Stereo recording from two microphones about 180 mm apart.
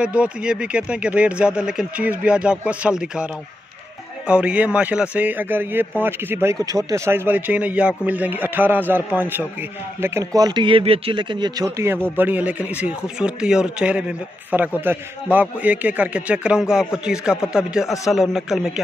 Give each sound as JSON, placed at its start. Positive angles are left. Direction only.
{"t": 0.0, "sound": "a man's voice", "side_deg": -5}
{"t": 4.3, "sound": "a man's voice", "side_deg": -5}